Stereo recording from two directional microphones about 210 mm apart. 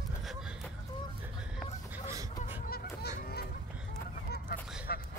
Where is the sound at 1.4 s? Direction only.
5° right (ahead or behind).